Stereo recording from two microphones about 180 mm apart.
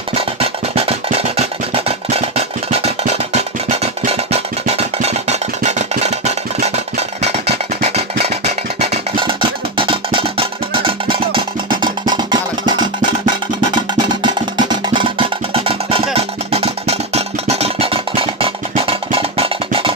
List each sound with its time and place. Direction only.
0.2 s music: 35° right (ahead or behind)
7.2 s music: 35° right (ahead or behind)
8.8 s music: 30° right (ahead or behind)